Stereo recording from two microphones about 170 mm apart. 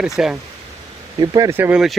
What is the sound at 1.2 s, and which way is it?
Speech, 20° right (ahead or behind).